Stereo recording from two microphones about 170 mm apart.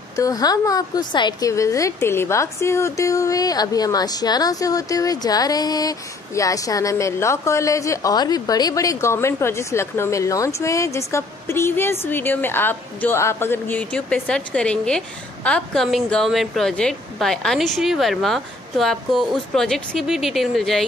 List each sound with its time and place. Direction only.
0.1 s a woman's voice: 20° left (ahead or behind); by 20.8 s centre (ahead or behind)